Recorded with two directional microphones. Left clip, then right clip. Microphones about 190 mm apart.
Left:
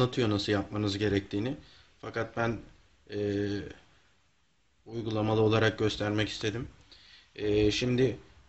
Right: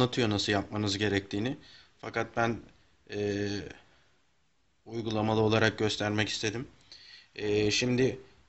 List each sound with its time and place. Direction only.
0.0 s speech: 25° right (ahead or behind)
4.9 s speech: 25° right (ahead or behind)